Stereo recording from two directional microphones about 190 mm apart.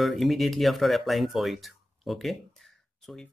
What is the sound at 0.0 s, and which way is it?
Speech, centre (ahead or behind).